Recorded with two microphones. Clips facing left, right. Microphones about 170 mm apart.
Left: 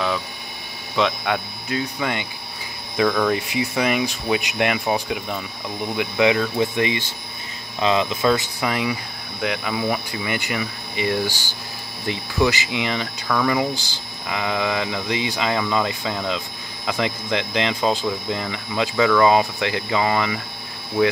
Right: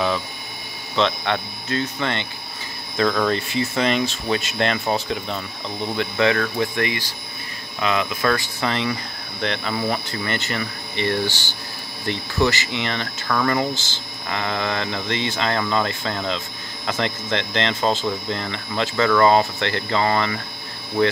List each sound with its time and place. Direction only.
0.9 s speech: 10° left (ahead or behind); by 8.2 s 25° left (ahead or behind)
8.2 s speech: 15° left (ahead or behind)
12.4 s speech: 15° left (ahead or behind)